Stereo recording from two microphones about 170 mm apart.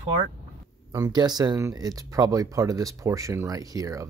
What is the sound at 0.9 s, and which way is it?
Speech, 20° right (ahead or behind).